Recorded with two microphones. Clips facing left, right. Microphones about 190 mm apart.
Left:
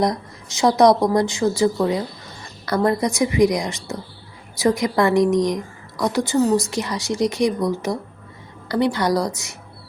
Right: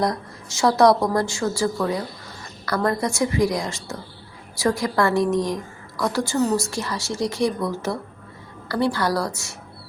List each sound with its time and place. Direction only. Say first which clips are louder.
0.0 s a woman's voice: left 3 dB; 20° left (ahead or behind)